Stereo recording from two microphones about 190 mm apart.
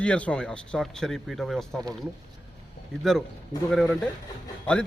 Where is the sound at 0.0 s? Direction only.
5° left (ahead or behind).